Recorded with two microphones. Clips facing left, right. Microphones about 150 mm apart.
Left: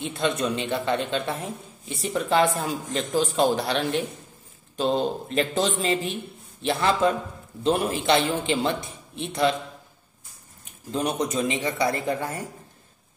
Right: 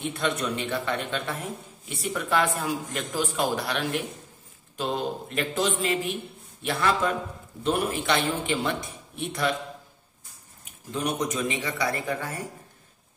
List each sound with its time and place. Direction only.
0.0 s a man's voice: 25° left (ahead or behind)
10.9 s a man's voice: 30° left (ahead or behind)